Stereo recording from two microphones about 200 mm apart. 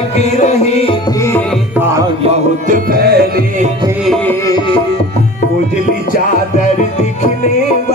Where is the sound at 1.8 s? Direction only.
15° right (ahead or behind).